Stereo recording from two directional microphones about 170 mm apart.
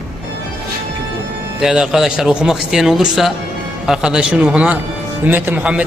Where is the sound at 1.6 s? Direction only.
5° right (ahead or behind).